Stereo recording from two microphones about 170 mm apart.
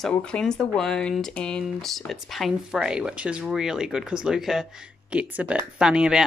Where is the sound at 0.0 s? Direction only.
5° left (ahead or behind).